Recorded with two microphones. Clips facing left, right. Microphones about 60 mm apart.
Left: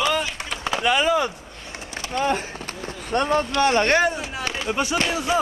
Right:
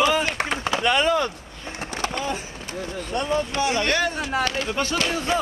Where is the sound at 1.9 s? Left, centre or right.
Right.